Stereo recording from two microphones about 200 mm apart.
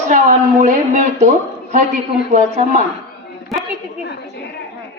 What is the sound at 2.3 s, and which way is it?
Speech, 40° right (ahead or behind).